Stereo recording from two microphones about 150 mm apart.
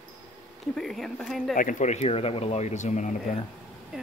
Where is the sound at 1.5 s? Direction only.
60° left (ahead or behind).